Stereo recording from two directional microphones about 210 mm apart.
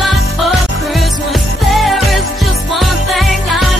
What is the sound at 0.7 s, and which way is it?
Music, centre (ahead or behind).